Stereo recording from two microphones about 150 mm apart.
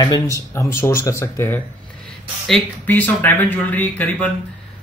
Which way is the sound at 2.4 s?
5° left (ahead or behind).